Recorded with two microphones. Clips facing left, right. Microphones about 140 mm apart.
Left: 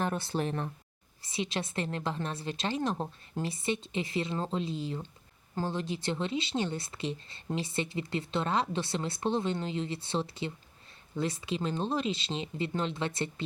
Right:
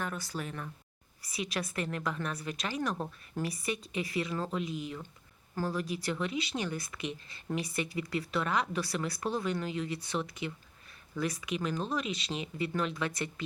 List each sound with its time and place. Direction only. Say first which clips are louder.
0.0 s a woman's voice: left 6 dB; 25° left (ahead or behind)